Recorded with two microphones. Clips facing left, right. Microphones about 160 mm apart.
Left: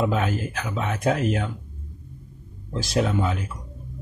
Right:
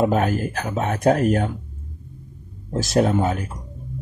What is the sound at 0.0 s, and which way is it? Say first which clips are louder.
Speech: right 4 dB; 45° right (ahead or behind).